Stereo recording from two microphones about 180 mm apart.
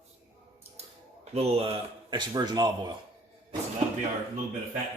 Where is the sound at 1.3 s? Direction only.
35° right (ahead or behind).